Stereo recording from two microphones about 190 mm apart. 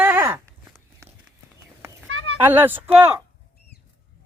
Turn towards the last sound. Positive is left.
turn(degrees=-10)  # may be behind; listen again after turning